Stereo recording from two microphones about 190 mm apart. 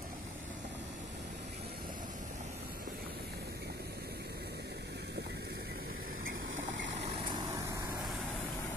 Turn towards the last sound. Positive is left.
turn(degrees=-15)  # may be behind; listen again after turning